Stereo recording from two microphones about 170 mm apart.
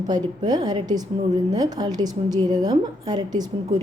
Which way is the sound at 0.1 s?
25° right (ahead or behind).